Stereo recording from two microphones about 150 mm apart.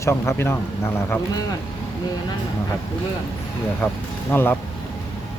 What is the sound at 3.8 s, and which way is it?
Speech, 15° left (ahead or behind).